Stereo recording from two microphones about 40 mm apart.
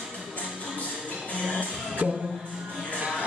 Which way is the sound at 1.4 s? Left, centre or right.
Left.